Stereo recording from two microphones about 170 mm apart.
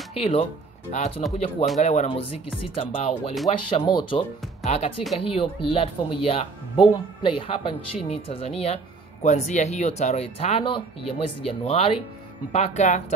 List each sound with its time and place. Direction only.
0.1 s a woman's voice: 35° left (ahead or behind)
4.6 s a woman's voice: 40° left (ahead or behind)